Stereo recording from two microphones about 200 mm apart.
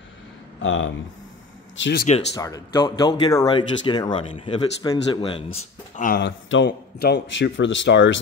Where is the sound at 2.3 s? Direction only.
15° left (ahead or behind).